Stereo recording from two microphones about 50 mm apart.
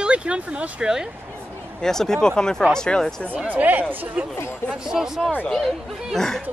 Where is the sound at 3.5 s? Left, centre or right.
Right.